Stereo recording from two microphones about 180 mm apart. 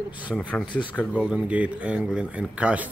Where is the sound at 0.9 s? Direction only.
5° right (ahead or behind).